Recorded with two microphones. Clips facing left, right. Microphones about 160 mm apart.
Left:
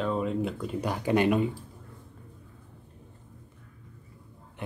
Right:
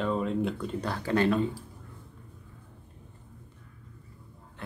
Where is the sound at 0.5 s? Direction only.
15° left (ahead or behind).